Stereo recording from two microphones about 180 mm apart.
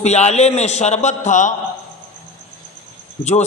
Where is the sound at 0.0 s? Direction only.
40° left (ahead or behind).